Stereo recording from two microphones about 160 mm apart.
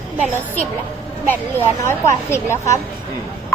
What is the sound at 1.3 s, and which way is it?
Speech, 15° left (ahead or behind).